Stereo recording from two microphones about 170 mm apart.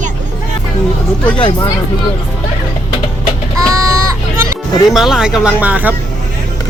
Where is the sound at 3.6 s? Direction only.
20° right (ahead or behind).